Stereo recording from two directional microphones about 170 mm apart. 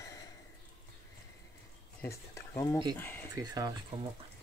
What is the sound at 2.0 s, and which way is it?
Speech, 15° left (ahead or behind).